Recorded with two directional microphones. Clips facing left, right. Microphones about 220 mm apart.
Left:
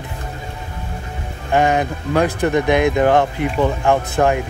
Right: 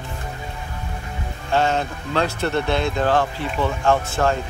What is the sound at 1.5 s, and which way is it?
Speech, 15° left (ahead or behind).